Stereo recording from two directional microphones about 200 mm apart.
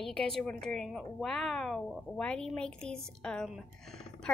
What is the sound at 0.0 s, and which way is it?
Speech, 5° left (ahead or behind).